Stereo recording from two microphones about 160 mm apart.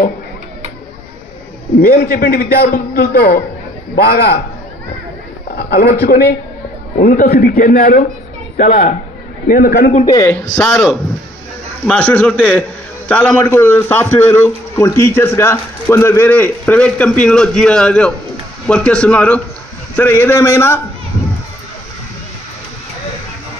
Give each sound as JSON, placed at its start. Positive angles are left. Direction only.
{"t": 1.8, "sound": "a man's voice", "side_deg": 70}
{"t": 5.6, "sound": "a man's voice", "side_deg": 70}
{"t": 9.5, "sound": "a man's voice", "side_deg": 65}
{"t": 10.0, "sound": "a man's voice", "side_deg": 25}
{"t": 10.5, "sound": "a man's voice", "side_deg": 5}